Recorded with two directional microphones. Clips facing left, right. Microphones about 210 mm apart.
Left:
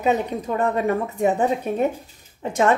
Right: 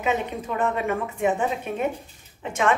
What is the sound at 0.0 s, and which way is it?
Speech, 40° left (ahead or behind).